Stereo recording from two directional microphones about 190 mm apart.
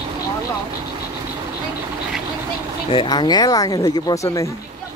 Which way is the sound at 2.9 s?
25° left (ahead or behind).